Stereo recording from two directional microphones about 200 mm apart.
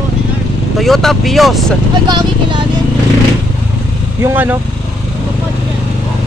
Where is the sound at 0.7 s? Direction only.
Centre (ahead or behind).